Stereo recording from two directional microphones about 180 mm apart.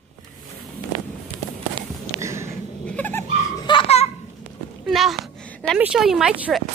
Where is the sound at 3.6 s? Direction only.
30° left (ahead or behind).